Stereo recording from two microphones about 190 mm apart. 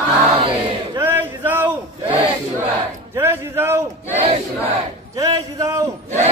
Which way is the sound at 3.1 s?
10° right (ahead or behind).